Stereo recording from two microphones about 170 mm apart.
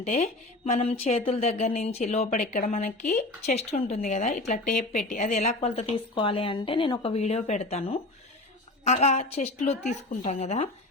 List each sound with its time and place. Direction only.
0.0 s speech: 45° left (ahead or behind)
2.4 s speech: 50° left (ahead or behind)
3.4 s speech: 40° left (ahead or behind)